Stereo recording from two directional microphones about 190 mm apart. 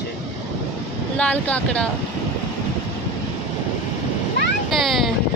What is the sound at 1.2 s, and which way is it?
Speech, 5° left (ahead or behind).